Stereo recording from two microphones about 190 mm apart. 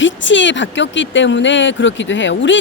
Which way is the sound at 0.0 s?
75° left (ahead or behind).